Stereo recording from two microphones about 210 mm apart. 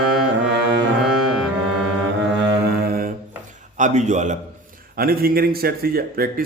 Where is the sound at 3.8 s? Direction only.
35° right (ahead or behind).